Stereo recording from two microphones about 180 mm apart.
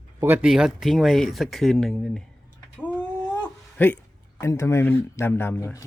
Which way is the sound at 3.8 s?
10° left (ahead or behind).